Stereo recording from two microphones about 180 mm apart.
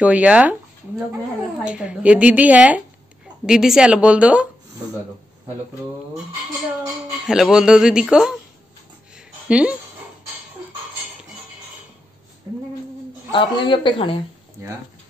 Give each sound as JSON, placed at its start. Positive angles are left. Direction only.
{"t": 0.0, "sound": "a woman's voice", "side_deg": -5}
{"t": 7.2, "sound": "speech", "side_deg": -5}
{"t": 9.1, "sound": "a sound", "side_deg": -5}
{"t": 13.3, "sound": "speech", "side_deg": 25}
{"t": 14.6, "sound": "a woman's voice", "side_deg": -15}